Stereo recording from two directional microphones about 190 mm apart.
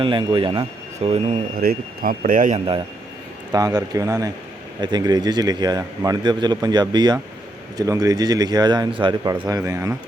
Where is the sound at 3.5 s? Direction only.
20° right (ahead or behind).